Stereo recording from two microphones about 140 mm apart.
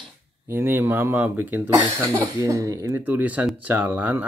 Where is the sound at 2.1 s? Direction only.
25° right (ahead or behind).